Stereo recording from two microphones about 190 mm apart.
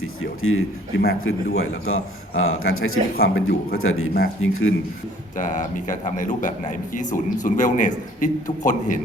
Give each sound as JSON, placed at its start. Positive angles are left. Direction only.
{"t": 0.0, "sound": "a man's voice", "side_deg": 90}
{"t": 3.2, "sound": "a man's voice", "side_deg": 60}
{"t": 5.4, "sound": "speech", "side_deg": 45}